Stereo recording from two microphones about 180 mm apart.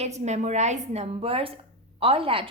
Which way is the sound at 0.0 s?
40° right (ahead or behind).